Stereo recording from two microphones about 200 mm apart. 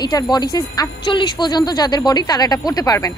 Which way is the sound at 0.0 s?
20° left (ahead or behind).